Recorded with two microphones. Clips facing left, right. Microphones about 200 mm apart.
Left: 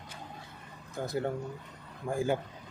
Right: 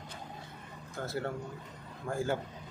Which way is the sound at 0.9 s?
15° left (ahead or behind).